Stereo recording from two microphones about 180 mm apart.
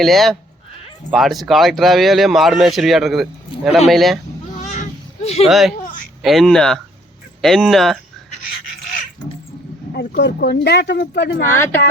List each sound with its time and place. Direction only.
0.0 s speech: centre (ahead or behind)
4.5 s a sound: 40° left (ahead or behind)
5.5 s speech: centre (ahead or behind)
10.2 s speech: 70° left (ahead or behind)
11.5 s speech: 15° left (ahead or behind)